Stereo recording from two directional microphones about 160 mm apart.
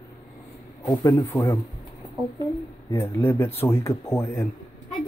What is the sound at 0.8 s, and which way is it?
Speech, 20° left (ahead or behind).